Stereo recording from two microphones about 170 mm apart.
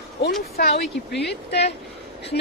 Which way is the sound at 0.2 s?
70° left (ahead or behind).